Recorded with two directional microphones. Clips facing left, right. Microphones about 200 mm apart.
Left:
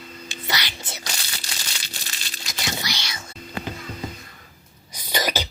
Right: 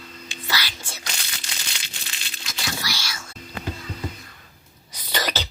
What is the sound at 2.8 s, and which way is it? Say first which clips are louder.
Whispering: left 1 dB; 20° left (ahead or behind).